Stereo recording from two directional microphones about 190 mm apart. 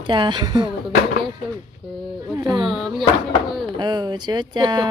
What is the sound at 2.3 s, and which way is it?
Speech, 20° right (ahead or behind).